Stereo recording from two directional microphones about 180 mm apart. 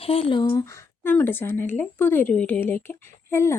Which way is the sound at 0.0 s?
30° left (ahead or behind).